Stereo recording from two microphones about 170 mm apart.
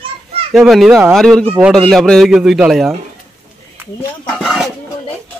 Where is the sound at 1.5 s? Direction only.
10° right (ahead or behind).